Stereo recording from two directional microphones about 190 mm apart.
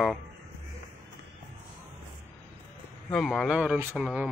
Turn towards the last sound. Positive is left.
turn(degrees=-5)  # may be behind; listen again after turning